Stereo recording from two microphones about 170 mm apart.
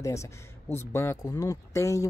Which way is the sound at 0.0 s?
15° left (ahead or behind).